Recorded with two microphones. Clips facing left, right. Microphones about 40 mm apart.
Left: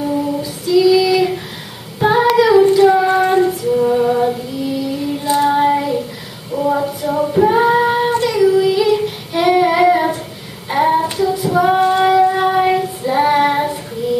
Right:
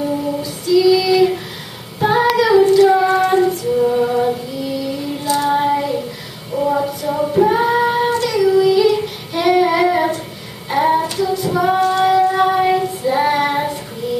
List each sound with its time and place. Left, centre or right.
0.0 s female singing: centre
2.0 s child singing: centre
3.2 s female singing: centre
5.2 s child singing: left
5.5 s child singing: centre